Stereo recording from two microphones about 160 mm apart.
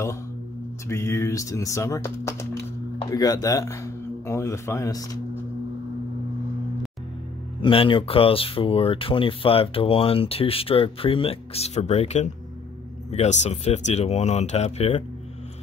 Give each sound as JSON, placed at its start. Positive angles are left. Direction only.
{"t": 0.8, "sound": "speech", "side_deg": 15}
{"t": 7.6, "sound": "speech", "side_deg": 35}